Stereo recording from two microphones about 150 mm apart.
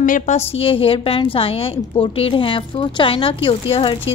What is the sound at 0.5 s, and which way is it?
A woman's voice, 40° left (ahead or behind).